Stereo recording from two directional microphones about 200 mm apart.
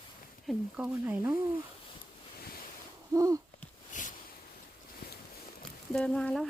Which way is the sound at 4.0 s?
40° left (ahead or behind).